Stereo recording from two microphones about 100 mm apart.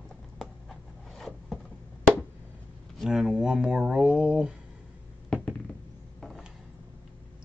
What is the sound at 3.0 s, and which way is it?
Speech, 5° right (ahead or behind).